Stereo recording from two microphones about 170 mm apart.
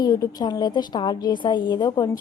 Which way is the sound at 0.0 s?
20° left (ahead or behind).